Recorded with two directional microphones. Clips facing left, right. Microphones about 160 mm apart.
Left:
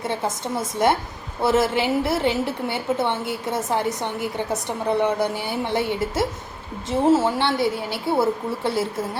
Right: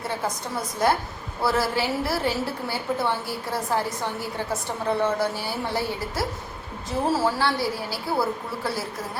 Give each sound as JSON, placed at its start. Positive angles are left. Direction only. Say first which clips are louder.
{"t": 0.0, "sound": "a woman's voice", "louder": "left 3 dB", "side_deg": 25}